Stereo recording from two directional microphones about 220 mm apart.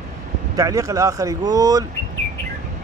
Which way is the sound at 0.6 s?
15° right (ahead or behind).